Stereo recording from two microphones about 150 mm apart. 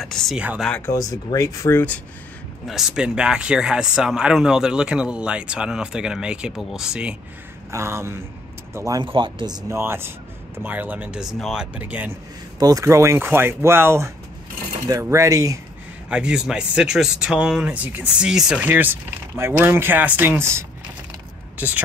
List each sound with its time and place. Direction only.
0.0 s speech: centre (ahead or behind)
0.4 s speech: 10° right (ahead or behind)
0.7 s speech: 10° left (ahead or behind)
0.9 s speech: 25° left (ahead or behind)
2.6 s speech: 5° right (ahead or behind)
7.7 s speech: 20° right (ahead or behind)
12.5 s speech: 25° right (ahead or behind)
16.1 s speech: 5° right (ahead or behind)